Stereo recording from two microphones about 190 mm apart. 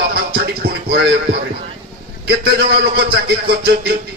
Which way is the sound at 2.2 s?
55° right (ahead or behind).